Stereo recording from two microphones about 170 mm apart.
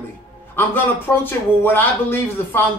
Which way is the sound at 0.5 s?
10° left (ahead or behind).